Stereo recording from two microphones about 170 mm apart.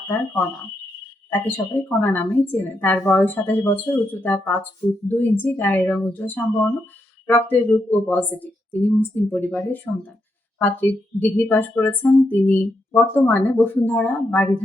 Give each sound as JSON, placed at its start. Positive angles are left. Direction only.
{"t": 1.3, "sound": "a woman's voice", "side_deg": 10}